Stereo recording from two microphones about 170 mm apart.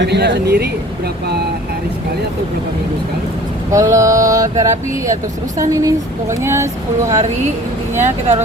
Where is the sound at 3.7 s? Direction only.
20° right (ahead or behind).